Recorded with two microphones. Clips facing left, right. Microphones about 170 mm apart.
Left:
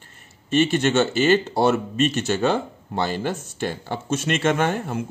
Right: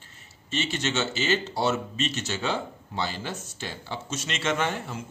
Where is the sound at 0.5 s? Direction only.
55° left (ahead or behind).